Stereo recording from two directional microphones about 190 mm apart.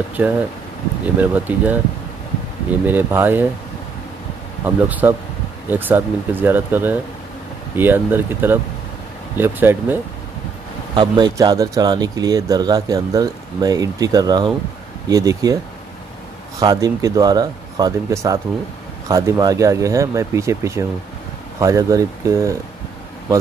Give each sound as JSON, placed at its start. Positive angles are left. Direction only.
{"t": 0.2, "sound": "speech", "side_deg": -10}
{"t": 4.6, "sound": "speech", "side_deg": -10}
{"t": 11.0, "sound": "speech", "side_deg": -25}